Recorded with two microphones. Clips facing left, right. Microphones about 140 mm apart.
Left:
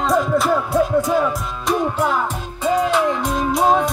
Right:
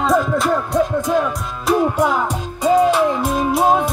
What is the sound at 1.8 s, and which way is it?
Music, 15° right (ahead or behind).